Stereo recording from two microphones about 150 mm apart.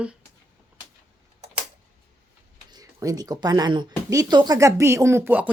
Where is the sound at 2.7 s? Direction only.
25° right (ahead or behind).